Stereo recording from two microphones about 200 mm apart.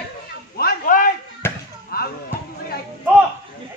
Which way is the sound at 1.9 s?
50° left (ahead or behind).